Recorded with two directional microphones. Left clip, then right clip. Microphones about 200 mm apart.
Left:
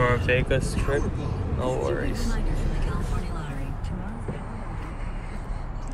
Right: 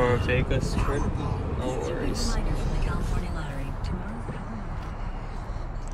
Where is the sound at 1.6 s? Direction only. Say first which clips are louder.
Left 4 dB; 20° right (ahead or behind).